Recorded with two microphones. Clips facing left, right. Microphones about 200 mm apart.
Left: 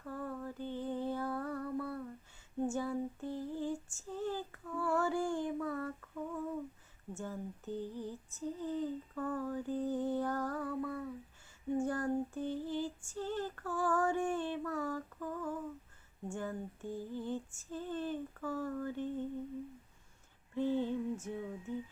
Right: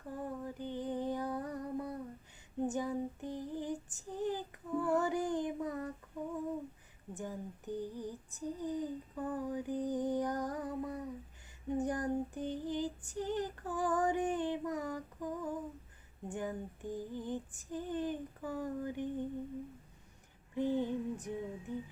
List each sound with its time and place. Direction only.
0.1 s female singing: 15° right (ahead or behind)
7.1 s female singing: 15° right (ahead or behind)
20.6 s music: 15° right (ahead or behind)